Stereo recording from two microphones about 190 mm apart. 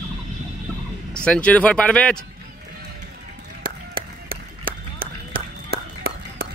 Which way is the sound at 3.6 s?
50° right (ahead or behind).